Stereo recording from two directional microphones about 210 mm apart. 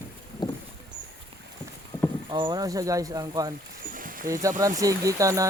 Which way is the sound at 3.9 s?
40° right (ahead or behind).